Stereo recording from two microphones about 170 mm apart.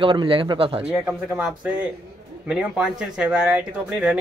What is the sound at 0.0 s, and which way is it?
Speech, 30° right (ahead or behind).